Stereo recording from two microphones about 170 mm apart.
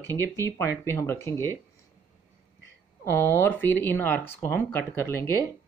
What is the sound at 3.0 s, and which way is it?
Speech, 15° left (ahead or behind).